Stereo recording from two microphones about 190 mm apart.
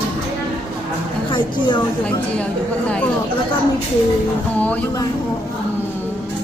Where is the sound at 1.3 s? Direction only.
25° left (ahead or behind).